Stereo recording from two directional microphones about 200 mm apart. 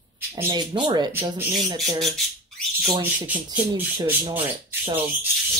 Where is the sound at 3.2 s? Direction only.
5° right (ahead or behind).